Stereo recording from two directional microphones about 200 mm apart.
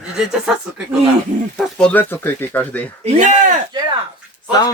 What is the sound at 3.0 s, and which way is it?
Speech, 35° right (ahead or behind).